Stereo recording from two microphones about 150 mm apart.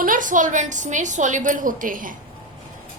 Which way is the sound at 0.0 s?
60° right (ahead or behind).